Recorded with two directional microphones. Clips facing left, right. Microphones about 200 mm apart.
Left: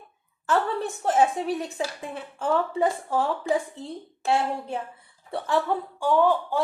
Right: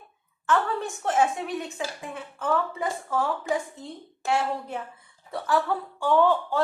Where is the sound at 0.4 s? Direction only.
35° left (ahead or behind).